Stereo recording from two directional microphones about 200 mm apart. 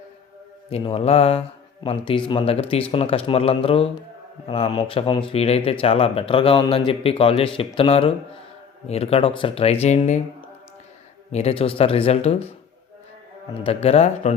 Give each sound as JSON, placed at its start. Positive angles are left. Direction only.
{"t": 0.7, "sound": "a man's voice", "side_deg": 25}
{"t": 11.3, "sound": "speech", "side_deg": 30}
{"t": 13.5, "sound": "a man's voice", "side_deg": 30}